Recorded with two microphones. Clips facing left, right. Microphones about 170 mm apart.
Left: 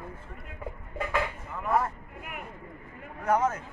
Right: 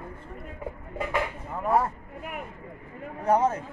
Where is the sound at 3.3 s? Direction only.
30° right (ahead or behind).